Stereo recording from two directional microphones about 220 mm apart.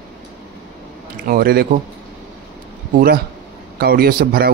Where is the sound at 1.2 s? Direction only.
40° right (ahead or behind).